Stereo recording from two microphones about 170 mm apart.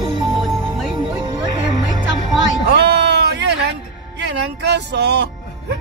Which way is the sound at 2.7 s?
85° right.